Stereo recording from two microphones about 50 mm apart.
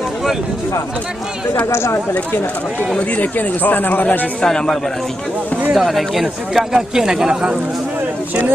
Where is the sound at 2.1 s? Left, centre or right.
Left.